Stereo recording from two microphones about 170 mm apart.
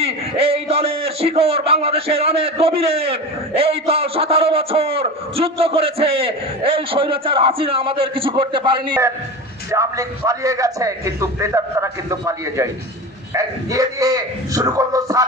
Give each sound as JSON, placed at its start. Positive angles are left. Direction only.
{"t": 0.0, "sound": "a man's voice", "side_deg": -35}
{"t": 9.7, "sound": "a man's voice", "side_deg": -20}